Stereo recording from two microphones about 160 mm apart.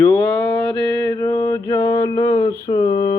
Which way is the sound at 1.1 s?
20° left (ahead or behind).